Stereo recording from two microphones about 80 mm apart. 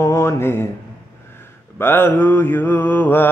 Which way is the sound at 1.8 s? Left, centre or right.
Left.